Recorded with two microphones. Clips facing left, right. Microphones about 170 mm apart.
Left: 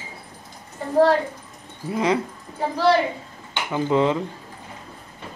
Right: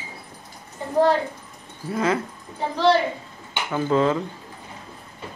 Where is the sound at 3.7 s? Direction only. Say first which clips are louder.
Even; 15° left (ahead or behind).